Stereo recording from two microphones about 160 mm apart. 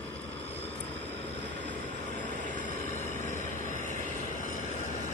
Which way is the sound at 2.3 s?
55° right (ahead or behind).